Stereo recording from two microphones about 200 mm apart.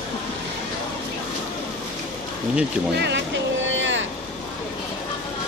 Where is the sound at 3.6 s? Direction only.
70° right (ahead or behind).